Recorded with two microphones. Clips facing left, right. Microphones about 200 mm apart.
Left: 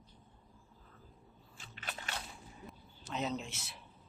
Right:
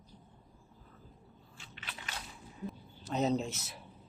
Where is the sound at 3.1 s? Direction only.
40° right (ahead or behind).